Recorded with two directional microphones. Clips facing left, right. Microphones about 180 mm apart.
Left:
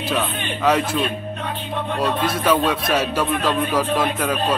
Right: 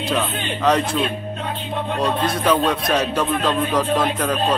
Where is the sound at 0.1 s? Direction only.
5° left (ahead or behind).